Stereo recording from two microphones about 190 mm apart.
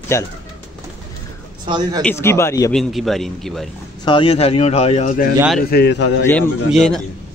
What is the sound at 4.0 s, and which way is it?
A man's voice, 25° left (ahead or behind).